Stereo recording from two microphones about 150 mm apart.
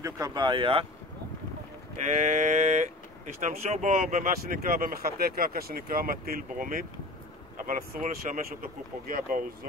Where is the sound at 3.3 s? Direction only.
50° right (ahead or behind).